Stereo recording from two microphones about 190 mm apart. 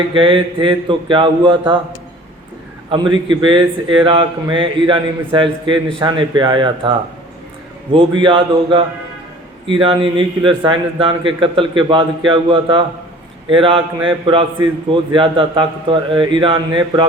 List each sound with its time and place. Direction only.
0.1 s a man's voice: 25° right (ahead or behind)
2.9 s a man's voice: 25° right (ahead or behind)
7.9 s a man's voice: 25° right (ahead or behind)